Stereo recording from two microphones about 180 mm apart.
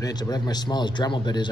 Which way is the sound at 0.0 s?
20° left (ahead or behind).